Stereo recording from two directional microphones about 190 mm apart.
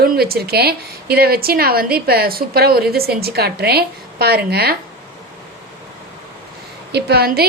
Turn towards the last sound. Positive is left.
turn(degrees=-55)  # may be behind; listen again after turning